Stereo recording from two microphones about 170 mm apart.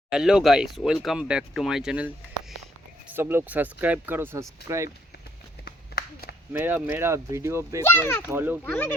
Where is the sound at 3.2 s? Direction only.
10° right (ahead or behind).